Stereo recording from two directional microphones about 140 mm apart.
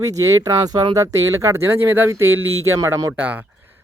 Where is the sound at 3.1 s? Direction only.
10° right (ahead or behind).